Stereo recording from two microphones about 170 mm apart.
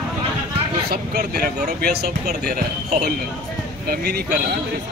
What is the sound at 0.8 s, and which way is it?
Speech, 65° right (ahead or behind).